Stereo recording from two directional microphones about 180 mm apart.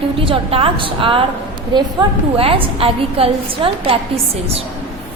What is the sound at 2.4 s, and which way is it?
A woman's voice, 30° right (ahead or behind).